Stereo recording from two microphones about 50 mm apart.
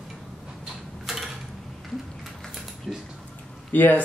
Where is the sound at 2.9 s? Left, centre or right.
Centre.